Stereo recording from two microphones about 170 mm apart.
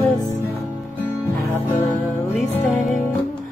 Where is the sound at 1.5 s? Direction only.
15° left (ahead or behind).